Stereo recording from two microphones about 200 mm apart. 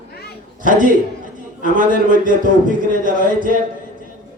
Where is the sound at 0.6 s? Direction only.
40° right (ahead or behind).